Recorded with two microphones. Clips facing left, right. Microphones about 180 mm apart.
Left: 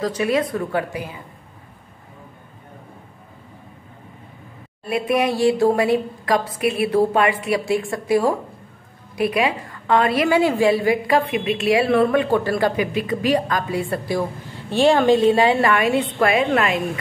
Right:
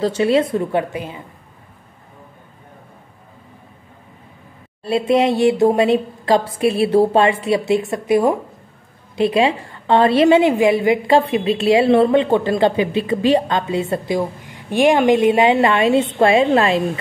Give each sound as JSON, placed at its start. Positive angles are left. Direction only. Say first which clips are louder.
{"t": 0.0, "sound": "a woman's voice", "louder": "right 4 dB", "side_deg": -25}
{"t": 4.8, "sound": "a woman's voice", "louder": "right 4 dB", "side_deg": -25}